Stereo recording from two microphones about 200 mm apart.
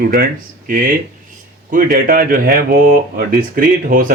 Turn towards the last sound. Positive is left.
turn(degrees=-45)  # may be behind; listen again after turning